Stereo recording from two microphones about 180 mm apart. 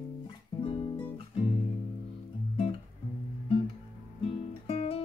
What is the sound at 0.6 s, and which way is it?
Music, 30° left (ahead or behind).